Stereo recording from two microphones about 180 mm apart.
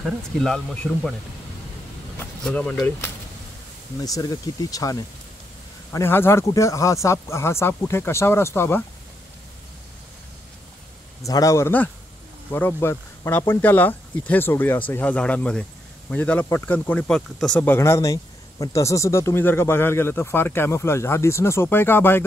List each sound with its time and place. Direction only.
0.0 s speech: centre (ahead or behind)
2.1 s speech: 5° left (ahead or behind)
4.0 s speech: 20° left (ahead or behind)
11.2 s speech: 20° left (ahead or behind)